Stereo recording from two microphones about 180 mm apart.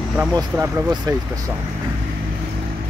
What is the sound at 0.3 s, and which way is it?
Speech, 20° right (ahead or behind).